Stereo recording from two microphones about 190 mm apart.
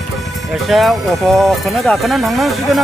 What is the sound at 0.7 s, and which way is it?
Speech, centre (ahead or behind).